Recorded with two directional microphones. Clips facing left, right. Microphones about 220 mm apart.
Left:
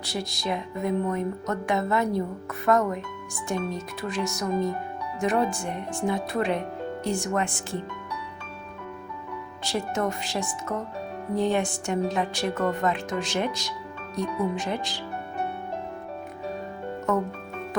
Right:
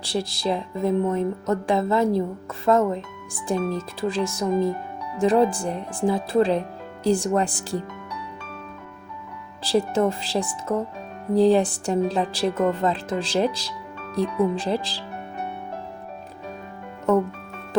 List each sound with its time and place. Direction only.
0.0 s speech: 30° right (ahead or behind)
9.6 s speech: 30° right (ahead or behind)